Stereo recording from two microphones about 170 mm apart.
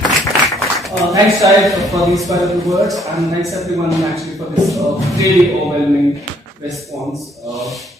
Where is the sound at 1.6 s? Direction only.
Centre (ahead or behind).